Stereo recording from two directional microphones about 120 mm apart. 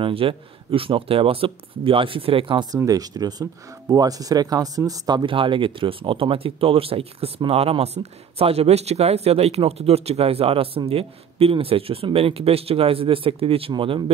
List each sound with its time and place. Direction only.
0.0 s speech: 50° right (ahead or behind)
2.7 s speech: 30° right (ahead or behind)